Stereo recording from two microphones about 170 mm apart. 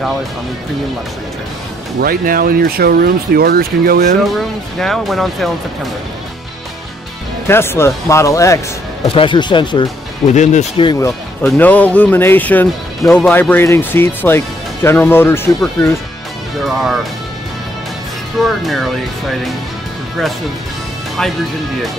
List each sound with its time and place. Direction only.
2.0 s speech: 60° right (ahead or behind)
4.2 s speech: centre (ahead or behind)
7.4 s speech: 15° left (ahead or behind)
9.0 s speech: 30° left (ahead or behind)
10.3 s speech: 45° left (ahead or behind)
11.4 s speech: 10° left (ahead or behind)
18.4 s speech: centre (ahead or behind)
21.2 s speech: 5° left (ahead or behind)